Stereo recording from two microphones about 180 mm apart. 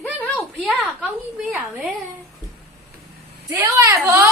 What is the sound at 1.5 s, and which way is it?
Speech, 5° right (ahead or behind).